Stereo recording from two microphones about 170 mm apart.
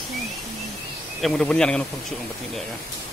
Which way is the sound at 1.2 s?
5° left (ahead or behind).